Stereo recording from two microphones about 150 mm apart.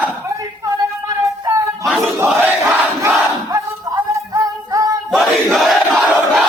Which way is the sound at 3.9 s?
25° right (ahead or behind).